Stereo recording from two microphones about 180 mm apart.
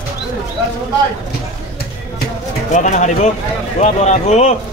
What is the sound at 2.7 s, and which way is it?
Speech, 40° left (ahead or behind).